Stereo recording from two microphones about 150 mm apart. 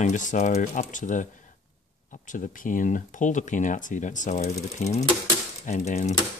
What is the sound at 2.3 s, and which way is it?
Speech, 60° left (ahead or behind).